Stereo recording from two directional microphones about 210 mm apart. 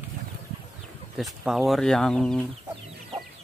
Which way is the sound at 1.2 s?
Centre (ahead or behind).